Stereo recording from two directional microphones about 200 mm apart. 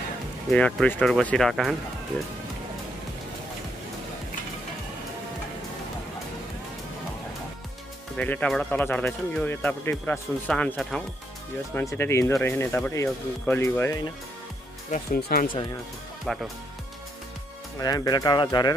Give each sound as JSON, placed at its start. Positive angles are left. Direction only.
{"t": 0.5, "sound": "speech", "side_deg": 5}
{"t": 8.2, "sound": "speech", "side_deg": 5}
{"t": 15.1, "sound": "speech", "side_deg": 50}
{"t": 16.3, "sound": "speech", "side_deg": 0}
{"t": 17.7, "sound": "speech", "side_deg": 20}